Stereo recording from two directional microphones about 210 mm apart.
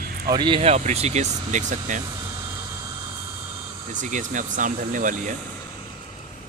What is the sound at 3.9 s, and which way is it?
Speech, 35° right (ahead or behind).